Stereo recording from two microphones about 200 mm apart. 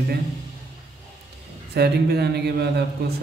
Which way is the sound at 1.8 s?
55° right (ahead or behind).